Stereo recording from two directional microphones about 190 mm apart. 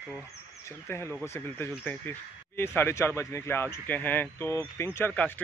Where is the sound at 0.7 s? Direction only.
15° left (ahead or behind).